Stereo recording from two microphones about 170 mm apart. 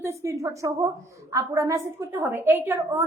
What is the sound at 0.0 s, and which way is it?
A woman's voice, 15° right (ahead or behind).